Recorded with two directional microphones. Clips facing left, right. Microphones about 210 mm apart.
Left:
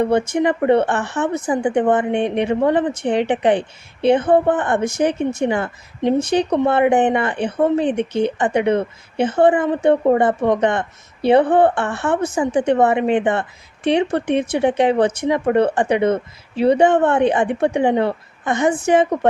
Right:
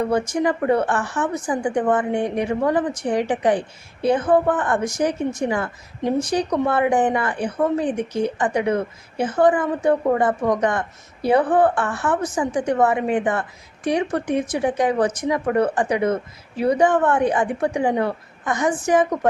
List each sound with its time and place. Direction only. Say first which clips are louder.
0.0 s a woman's voice: left 3 dB; 25° left (ahead or behind)